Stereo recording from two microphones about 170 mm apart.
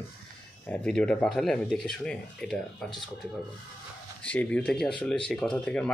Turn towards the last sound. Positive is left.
turn(degrees=5)  # may be behind; listen again after turning